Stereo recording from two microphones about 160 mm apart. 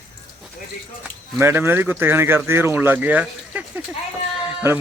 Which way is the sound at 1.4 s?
15° right (ahead or behind).